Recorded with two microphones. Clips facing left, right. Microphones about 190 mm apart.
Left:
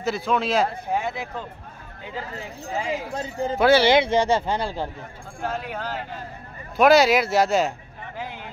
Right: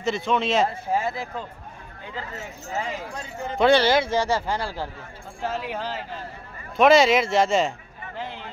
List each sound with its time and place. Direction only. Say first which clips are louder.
0.0 s speech: even; centre (ahead or behind)
2.3 s speech: left 1 dB; 15° left (ahead or behind)
3.2 s speech: left 6 dB; 30° left (ahead or behind)
3.5 s speech: even; 5° left (ahead or behind)
3.8 s speech: left 3 dB; 20° left (ahead or behind)
5.4 s speech: even; 5° right (ahead or behind)